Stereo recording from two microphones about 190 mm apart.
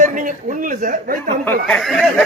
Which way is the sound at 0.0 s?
45° right (ahead or behind).